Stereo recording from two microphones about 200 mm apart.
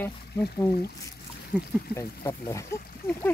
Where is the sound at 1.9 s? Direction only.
15° left (ahead or behind).